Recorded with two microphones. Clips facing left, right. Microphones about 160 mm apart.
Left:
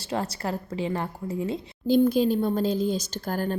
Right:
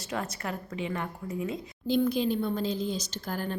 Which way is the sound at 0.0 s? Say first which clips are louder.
Left 5 dB; 30° left (ahead or behind).